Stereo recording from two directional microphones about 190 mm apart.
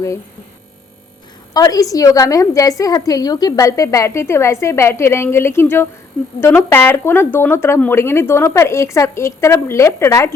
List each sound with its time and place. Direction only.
1.5 s a woman's voice: 20° left (ahead or behind)